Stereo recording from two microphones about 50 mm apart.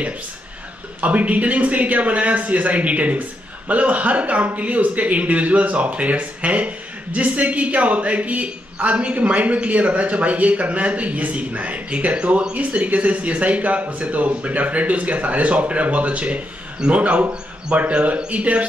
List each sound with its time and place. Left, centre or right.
1.0 s a man's voice: right